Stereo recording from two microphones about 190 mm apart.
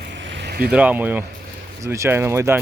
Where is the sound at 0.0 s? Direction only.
70° right (ahead or behind).